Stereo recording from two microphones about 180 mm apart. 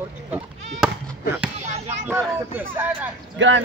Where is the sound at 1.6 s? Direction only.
40° right (ahead or behind).